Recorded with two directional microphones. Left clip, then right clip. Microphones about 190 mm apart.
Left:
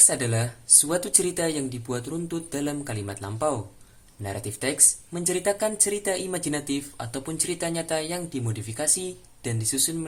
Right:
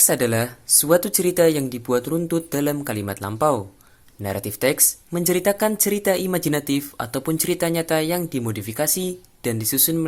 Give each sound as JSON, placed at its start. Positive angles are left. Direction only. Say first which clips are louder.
{"t": 0.0, "sound": "speech", "louder": "right 5 dB", "side_deg": -40}